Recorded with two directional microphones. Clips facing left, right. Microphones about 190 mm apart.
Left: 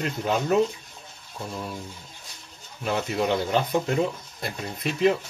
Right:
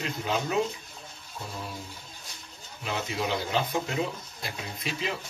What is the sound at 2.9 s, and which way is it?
Speech, 55° left (ahead or behind).